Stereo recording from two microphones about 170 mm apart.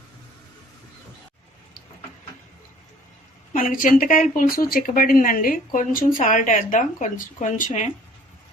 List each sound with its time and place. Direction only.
3.5 s speech: 55° left (ahead or behind)